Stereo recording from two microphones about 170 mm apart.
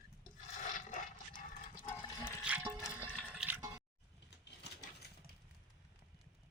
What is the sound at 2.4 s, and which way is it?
Water, 10° right (ahead or behind).